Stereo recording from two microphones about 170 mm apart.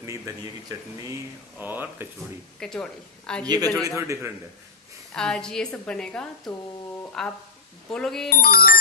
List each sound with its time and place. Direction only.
0.0 s speech: 20° right (ahead or behind)
2.6 s a woman's voice: 5° left (ahead or behind)
3.8 s speech: 15° right (ahead or behind)
5.1 s a woman's voice: 5° left (ahead or behind)
8.3 s speech: 60° left (ahead or behind)